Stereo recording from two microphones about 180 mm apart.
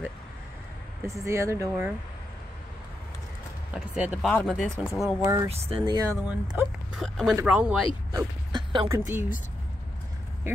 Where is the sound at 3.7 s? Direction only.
5° right (ahead or behind).